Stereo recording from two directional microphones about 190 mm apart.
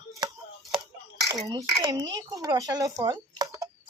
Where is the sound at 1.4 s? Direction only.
20° right (ahead or behind).